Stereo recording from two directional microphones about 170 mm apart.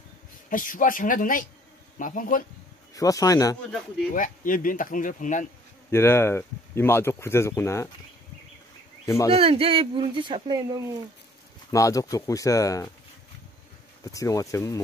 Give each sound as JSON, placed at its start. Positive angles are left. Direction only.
{"t": 0.5, "sound": "speech", "side_deg": 55}
{"t": 2.9, "sound": "speech", "side_deg": 20}
{"t": 4.1, "sound": "speech", "side_deg": 55}
{"t": 5.9, "sound": "speech", "side_deg": 15}
{"t": 9.0, "sound": "speech", "side_deg": 15}
{"t": 9.3, "sound": "speech", "side_deg": -35}
{"t": 11.7, "sound": "speech", "side_deg": 20}
{"t": 14.0, "sound": "speech", "side_deg": 20}